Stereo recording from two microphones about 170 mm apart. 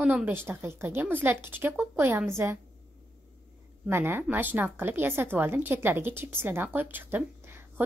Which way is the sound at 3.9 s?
15° right (ahead or behind).